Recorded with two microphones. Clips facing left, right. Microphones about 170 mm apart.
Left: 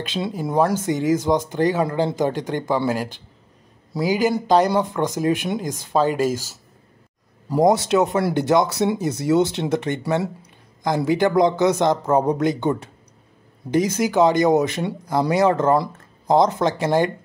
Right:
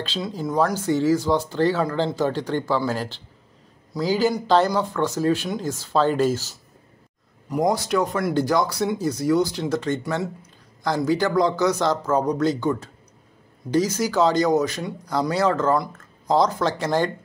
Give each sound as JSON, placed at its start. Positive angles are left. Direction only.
{"t": 0.0, "sound": "speech", "side_deg": 20}
{"t": 7.4, "sound": "speech", "side_deg": 25}